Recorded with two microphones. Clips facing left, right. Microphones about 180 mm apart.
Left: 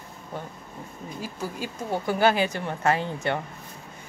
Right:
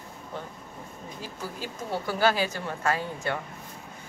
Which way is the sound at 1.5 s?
15° left (ahead or behind).